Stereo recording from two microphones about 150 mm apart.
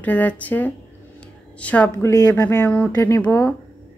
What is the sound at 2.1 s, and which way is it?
Speech, 25° left (ahead or behind).